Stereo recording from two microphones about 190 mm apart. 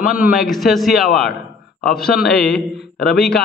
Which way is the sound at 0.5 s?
Centre (ahead or behind).